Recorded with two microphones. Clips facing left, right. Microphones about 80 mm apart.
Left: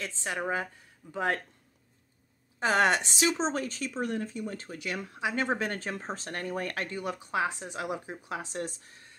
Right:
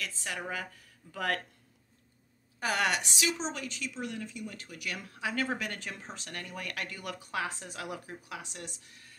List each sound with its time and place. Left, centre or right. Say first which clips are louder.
0.0 s speech: left 5 dB; left
2.6 s a woman's voice: left 5 dB; left